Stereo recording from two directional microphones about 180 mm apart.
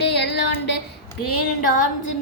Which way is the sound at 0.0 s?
70° left (ahead or behind).